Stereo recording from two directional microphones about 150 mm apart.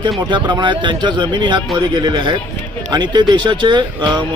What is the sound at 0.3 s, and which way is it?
A man's voice, 30° right (ahead or behind).